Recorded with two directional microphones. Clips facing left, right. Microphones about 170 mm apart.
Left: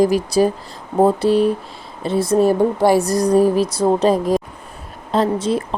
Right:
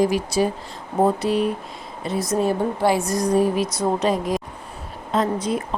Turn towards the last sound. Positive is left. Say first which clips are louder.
# left 4 dB
turn(degrees=30)  # may be behind; listen again after turning